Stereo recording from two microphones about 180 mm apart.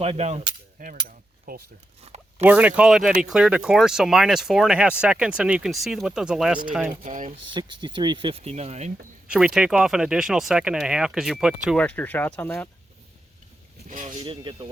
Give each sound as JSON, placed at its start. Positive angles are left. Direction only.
{"t": 0.0, "sound": "a sound", "side_deg": -35}
{"t": 1.0, "sound": "cutlery", "side_deg": -55}
{"t": 2.4, "sound": "speech", "side_deg": -10}
{"t": 7.0, "sound": "speech", "side_deg": -45}
{"t": 7.3, "sound": "speech", "side_deg": -25}
{"t": 9.2, "sound": "speech", "side_deg": -5}
{"t": 11.8, "sound": "speech", "side_deg": 10}
{"t": 13.8, "sound": "speech", "side_deg": -45}
{"t": 14.2, "sound": "speech", "side_deg": -25}